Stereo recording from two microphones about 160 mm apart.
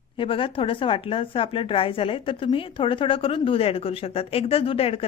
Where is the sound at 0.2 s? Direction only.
35° left (ahead or behind).